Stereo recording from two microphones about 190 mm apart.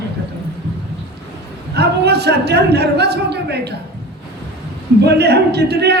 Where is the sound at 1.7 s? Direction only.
60° right (ahead or behind).